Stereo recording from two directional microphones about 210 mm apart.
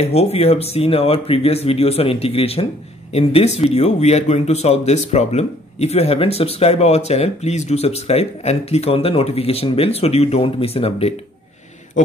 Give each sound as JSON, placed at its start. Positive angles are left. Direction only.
{"t": 0.0, "sound": "speech", "side_deg": 30}